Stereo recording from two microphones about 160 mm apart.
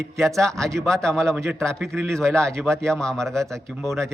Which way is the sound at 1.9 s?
15° right (ahead or behind).